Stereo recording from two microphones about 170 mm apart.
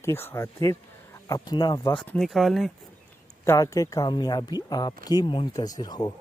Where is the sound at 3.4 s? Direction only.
20° left (ahead or behind).